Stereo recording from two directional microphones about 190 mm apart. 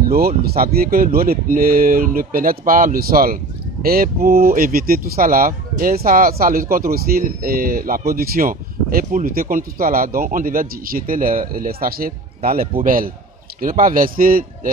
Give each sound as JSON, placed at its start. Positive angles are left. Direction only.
{"t": 0.4, "sound": "speech", "side_deg": -55}